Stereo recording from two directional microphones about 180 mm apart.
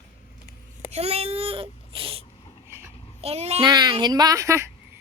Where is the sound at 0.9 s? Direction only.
35° right (ahead or behind).